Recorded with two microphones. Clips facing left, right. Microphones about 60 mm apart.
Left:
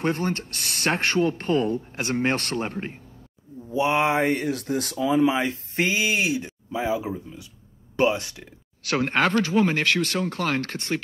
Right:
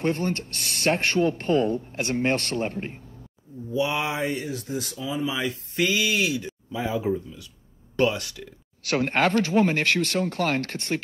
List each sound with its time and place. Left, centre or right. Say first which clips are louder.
0.0 s speech: even; left
1.5 s speech: right 2 dB; right
2.0 s speech: even; left
5.3 s speech: left 3 dB; left